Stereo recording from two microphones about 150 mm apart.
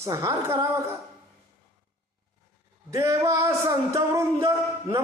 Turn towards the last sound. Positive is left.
turn(degrees=-20)  # may be behind; listen again after turning